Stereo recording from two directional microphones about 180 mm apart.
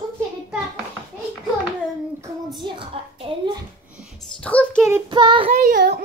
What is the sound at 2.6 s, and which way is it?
A woman's voice, 25° right (ahead or behind).